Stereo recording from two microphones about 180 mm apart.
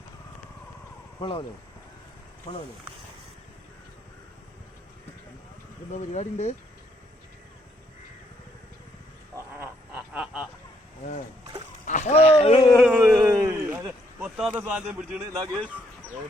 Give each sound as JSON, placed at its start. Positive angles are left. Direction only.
{"t": 1.2, "sound": "speech", "side_deg": 25}
{"t": 5.9, "sound": "speech", "side_deg": 40}
{"t": 9.3, "sound": "frog", "side_deg": -10}
{"t": 11.9, "sound": "speech", "side_deg": 40}
{"t": 12.7, "sound": "a sound", "side_deg": 0}
{"t": 13.2, "sound": "a sound", "side_deg": -15}
{"t": 14.3, "sound": "speech", "side_deg": -5}